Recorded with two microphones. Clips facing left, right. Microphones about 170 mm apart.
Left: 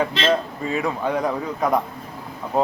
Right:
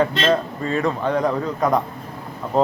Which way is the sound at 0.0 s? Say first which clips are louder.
Right 2 dB; 5° left (ahead or behind).